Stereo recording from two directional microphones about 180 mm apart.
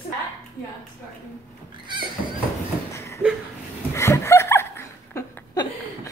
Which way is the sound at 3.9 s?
15° left (ahead or behind).